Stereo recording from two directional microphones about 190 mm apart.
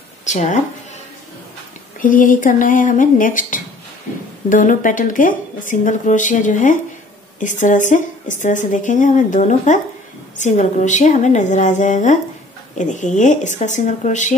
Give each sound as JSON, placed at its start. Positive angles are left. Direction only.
{"t": 0.2, "sound": "speech", "side_deg": 40}
{"t": 2.0, "sound": "speech", "side_deg": 45}